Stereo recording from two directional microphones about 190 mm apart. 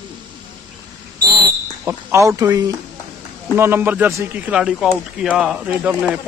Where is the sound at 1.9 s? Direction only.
15° right (ahead or behind).